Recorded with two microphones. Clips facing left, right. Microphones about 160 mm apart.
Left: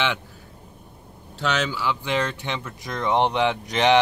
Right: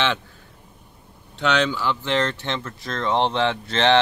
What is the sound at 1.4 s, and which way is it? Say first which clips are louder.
Speech: right 3 dB; 5° left (ahead or behind).